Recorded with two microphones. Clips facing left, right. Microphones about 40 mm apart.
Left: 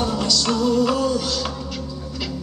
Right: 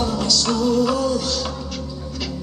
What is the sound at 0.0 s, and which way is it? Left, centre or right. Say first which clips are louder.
Music: even; centre.